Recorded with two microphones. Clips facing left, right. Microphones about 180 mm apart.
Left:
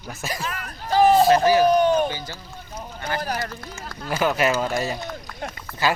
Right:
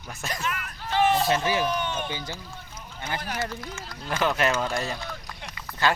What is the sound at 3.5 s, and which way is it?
Speech, 55° left (ahead or behind).